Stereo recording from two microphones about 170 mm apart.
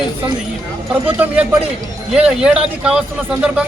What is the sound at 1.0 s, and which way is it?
Speech, 10° right (ahead or behind).